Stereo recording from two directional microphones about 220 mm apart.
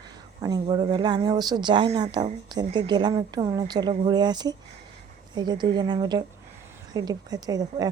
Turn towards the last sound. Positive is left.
turn(degrees=-15)  # may be behind; listen again after turning